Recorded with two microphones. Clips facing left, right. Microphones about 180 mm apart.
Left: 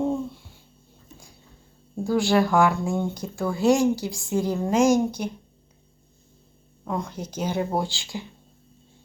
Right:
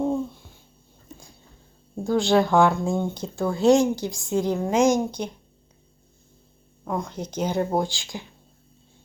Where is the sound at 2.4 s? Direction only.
25° right (ahead or behind).